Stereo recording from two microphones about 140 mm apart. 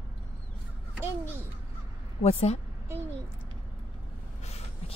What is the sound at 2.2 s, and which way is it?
Speech, 50° left (ahead or behind).